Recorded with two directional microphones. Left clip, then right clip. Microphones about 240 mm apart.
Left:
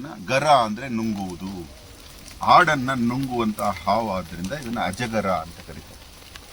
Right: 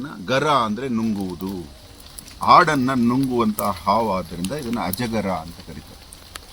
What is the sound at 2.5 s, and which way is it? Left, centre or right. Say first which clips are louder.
Speech: right 2 dB; centre.